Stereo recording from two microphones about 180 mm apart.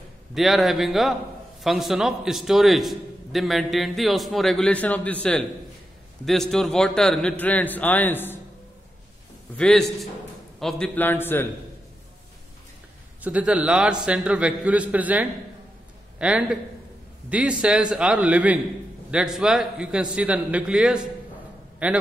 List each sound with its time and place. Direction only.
0.3 s a man's voice: centre (ahead or behind)
9.6 s a man's voice: 5° left (ahead or behind)
13.2 s a man's voice: 5° right (ahead or behind)